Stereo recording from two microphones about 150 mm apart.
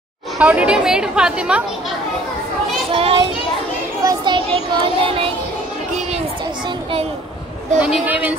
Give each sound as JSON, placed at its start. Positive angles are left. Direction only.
{"t": 0.4, "sound": "a woman's voice", "side_deg": -10}
{"t": 2.9, "sound": "children playing", "side_deg": -35}
{"t": 4.6, "sound": "child singing", "side_deg": -35}
{"t": 7.8, "sound": "a woman's voice", "side_deg": -10}